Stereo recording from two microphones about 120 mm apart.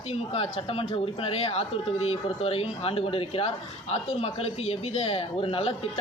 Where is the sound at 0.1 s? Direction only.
55° left (ahead or behind).